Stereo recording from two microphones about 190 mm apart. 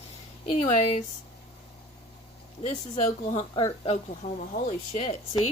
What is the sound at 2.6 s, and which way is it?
Speech, 35° left (ahead or behind).